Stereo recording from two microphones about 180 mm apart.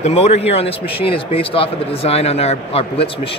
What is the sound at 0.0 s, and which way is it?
Speech, 35° left (ahead or behind).